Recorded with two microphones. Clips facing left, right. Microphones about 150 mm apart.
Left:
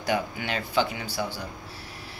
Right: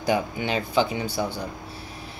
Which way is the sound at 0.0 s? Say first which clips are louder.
Right 3 dB; 20° right (ahead or behind).